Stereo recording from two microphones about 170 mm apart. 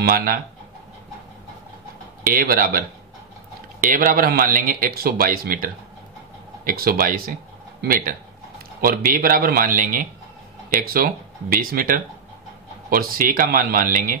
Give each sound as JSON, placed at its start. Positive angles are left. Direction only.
{"t": 0.0, "sound": "a man's voice", "side_deg": -55}
{"t": 2.2, "sound": "a man's voice", "side_deg": -60}
{"t": 3.8, "sound": "a man's voice", "side_deg": -55}